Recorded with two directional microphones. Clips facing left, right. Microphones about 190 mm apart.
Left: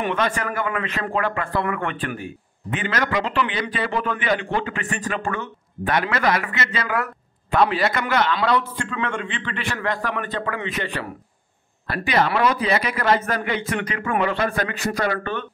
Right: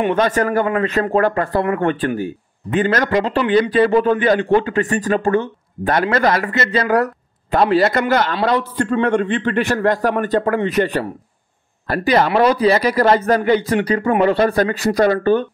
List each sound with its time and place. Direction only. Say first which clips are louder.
0.0 s a man's voice: right 7 dB; 35° right (ahead or behind)